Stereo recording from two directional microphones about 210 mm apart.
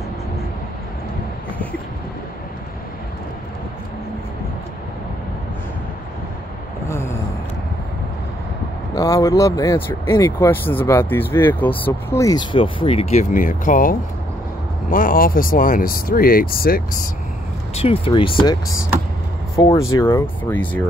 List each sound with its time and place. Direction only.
6.9 s a sound: 10° left (ahead or behind)
8.9 s speech: 15° left (ahead or behind); by 17.1 s 45° left (ahead or behind)
17.7 s speech: 25° left (ahead or behind); by 20.8 s 10° left (ahead or behind)